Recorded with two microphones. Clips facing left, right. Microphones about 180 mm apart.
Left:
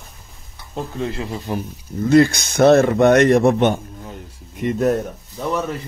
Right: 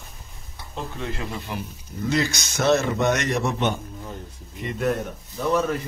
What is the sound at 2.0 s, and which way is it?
Speech, 55° left (ahead or behind).